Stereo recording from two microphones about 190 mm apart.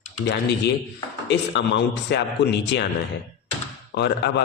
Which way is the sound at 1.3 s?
70° left (ahead or behind).